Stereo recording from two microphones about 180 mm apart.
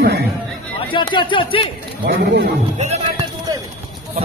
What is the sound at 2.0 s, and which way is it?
Speech, 65° right (ahead or behind).